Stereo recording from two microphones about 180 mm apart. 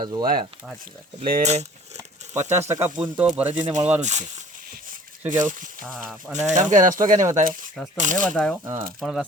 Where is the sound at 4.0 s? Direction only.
40° right (ahead or behind).